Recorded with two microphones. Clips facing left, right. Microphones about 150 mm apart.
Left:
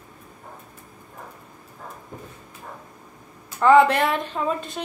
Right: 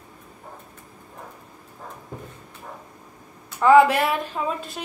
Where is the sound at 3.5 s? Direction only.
5° right (ahead or behind).